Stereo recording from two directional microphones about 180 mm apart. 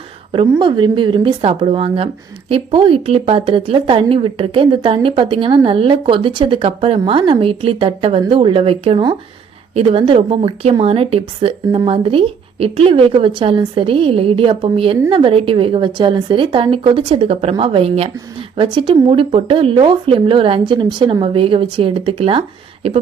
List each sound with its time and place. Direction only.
0.3 s a woman's voice: 25° right (ahead or behind)